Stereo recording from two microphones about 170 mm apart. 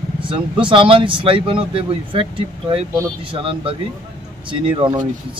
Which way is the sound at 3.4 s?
35° right (ahead or behind).